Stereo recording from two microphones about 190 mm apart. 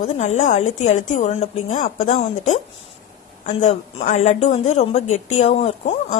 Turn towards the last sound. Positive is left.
turn(degrees=35)  # may be behind; listen again after turning